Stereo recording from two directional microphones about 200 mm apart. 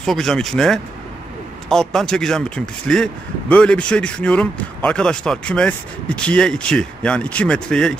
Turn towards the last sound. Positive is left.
turn(degrees=5)  # may be behind; listen again after turning